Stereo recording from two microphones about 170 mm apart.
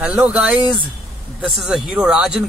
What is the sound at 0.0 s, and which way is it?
Speech, 5° right (ahead or behind).